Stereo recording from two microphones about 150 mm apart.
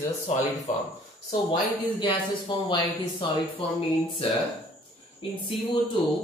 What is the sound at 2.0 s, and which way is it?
Speech, 35° left (ahead or behind).